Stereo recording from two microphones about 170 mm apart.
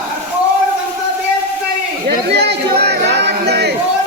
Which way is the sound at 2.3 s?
80° right.